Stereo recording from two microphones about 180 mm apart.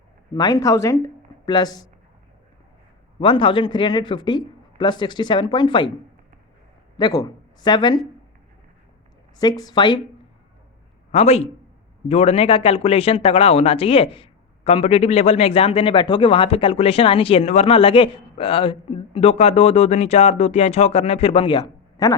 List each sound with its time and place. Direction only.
0.3 s speech: 20° left (ahead or behind)
3.2 s speech: 25° left (ahead or behind)
7.0 s speech: 20° left (ahead or behind)
9.4 s speech: 20° left (ahead or behind)
11.1 s a man's voice: 35° left (ahead or behind); by 22.1 s 20° left (ahead or behind)